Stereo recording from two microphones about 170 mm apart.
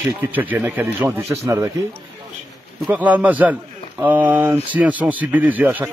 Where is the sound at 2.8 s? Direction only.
10° right (ahead or behind).